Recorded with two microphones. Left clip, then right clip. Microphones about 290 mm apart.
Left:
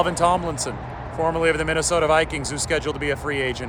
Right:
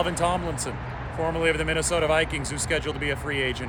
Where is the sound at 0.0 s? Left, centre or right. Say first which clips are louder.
Left 5 dB; centre.